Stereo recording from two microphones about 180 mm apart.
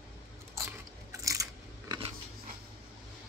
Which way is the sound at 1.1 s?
20° right (ahead or behind).